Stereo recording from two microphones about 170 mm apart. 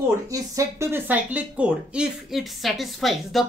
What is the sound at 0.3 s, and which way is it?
Speech, 15° right (ahead or behind).